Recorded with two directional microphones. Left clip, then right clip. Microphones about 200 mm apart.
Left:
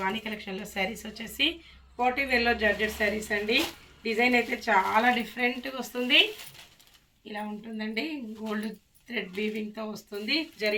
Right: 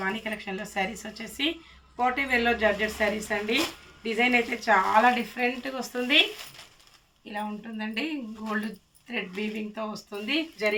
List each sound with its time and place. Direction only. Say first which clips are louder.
0.0 s a woman's voice: right 1 dB; 10° right (ahead or behind)
7.3 s speech: right 3 dB; 20° right (ahead or behind)